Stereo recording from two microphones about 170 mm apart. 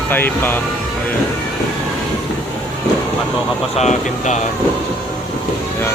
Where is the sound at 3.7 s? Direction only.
45° left (ahead or behind).